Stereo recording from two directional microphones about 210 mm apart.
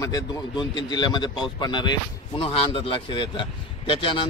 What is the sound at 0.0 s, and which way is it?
A man's voice, 20° left (ahead or behind).